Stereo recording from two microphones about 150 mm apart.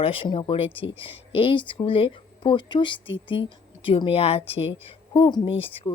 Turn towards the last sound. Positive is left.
turn(degrees=35)  # may be behind; listen again after turning